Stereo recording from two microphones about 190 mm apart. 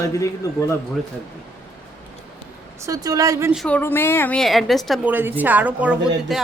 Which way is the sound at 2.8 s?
20° right (ahead or behind).